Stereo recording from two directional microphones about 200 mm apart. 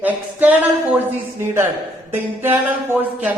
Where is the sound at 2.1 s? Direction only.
10° right (ahead or behind).